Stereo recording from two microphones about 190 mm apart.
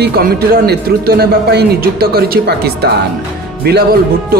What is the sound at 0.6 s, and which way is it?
Speech, 55° right (ahead or behind).